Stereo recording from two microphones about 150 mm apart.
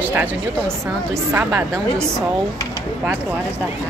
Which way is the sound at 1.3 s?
15° right (ahead or behind).